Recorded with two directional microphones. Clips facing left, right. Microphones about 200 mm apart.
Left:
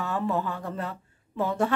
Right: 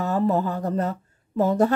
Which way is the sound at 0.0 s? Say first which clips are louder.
Right 6 dB; 40° right (ahead or behind).